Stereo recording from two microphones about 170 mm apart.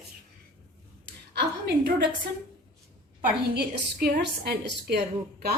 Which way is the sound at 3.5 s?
70° right (ahead or behind).